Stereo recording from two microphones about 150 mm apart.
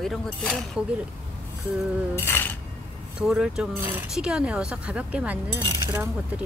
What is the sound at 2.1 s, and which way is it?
Speech, 15° left (ahead or behind).